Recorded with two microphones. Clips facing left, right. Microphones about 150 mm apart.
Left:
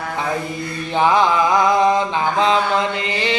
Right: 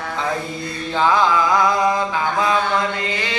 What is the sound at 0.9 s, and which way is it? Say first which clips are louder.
Mantra: left 1 dB; 20° left (ahead or behind).